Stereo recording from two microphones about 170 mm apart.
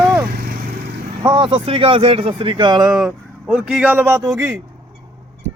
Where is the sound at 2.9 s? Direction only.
5° right (ahead or behind).